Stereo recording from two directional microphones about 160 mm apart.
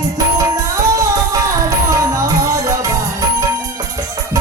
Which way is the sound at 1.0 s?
20° right (ahead or behind).